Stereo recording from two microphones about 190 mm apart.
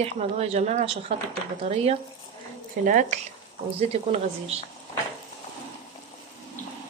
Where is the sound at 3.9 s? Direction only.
30° right (ahead or behind).